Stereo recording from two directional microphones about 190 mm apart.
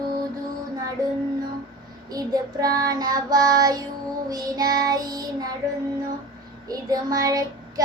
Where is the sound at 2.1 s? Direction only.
20° right (ahead or behind).